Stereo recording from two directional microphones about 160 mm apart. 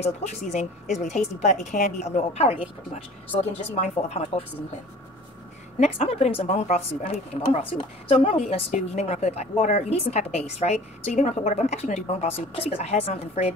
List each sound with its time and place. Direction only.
0.0 s a woman's voice: 45° left (ahead or behind)
5.9 s a woman's voice: 40° left (ahead or behind)